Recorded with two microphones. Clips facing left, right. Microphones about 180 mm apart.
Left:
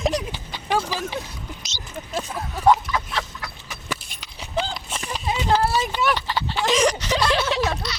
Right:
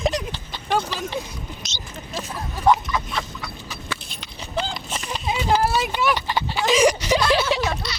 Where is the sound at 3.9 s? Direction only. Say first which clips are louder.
Left 5 dB; 5° left (ahead or behind).